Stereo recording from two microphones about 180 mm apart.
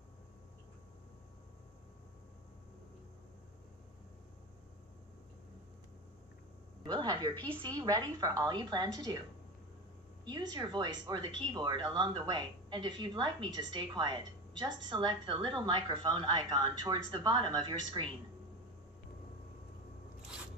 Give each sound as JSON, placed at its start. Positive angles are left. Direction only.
{"t": 6.9, "sound": "speech", "side_deg": -25}
{"t": 10.2, "sound": "speech", "side_deg": -25}